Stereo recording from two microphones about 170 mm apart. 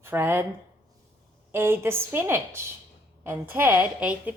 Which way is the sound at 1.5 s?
15° right (ahead or behind).